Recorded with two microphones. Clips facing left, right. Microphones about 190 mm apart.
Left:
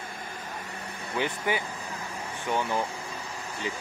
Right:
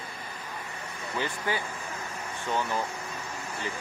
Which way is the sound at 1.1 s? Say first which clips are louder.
Left 2 dB; 15° left (ahead or behind).